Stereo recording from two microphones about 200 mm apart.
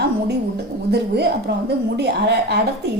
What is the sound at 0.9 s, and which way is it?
A woman's voice, 55° right (ahead or behind).